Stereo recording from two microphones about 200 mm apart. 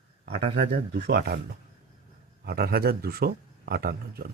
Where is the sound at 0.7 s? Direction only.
55° right (ahead or behind).